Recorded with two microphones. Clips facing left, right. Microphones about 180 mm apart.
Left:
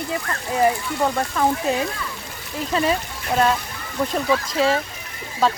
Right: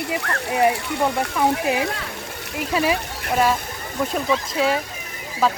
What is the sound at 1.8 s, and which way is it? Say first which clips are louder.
Speech: right 1 dB; 65° right (ahead or behind).